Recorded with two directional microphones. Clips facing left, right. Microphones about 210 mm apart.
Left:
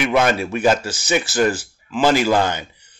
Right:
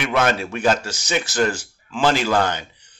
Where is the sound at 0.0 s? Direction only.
10° left (ahead or behind).